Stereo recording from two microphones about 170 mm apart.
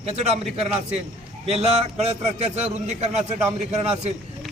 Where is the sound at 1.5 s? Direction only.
35° right (ahead or behind).